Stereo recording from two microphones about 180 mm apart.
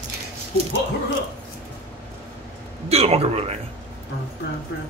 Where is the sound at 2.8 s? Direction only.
35° right (ahead or behind).